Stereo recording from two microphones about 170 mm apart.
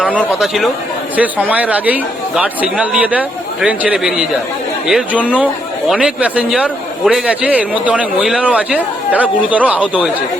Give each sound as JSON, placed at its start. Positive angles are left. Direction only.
{"t": 0.0, "sound": "a man's voice", "side_deg": -5}